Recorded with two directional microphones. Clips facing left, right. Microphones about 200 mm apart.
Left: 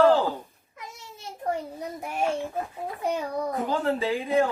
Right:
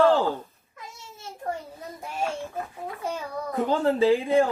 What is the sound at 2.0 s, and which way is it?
Speech, 15° left (ahead or behind).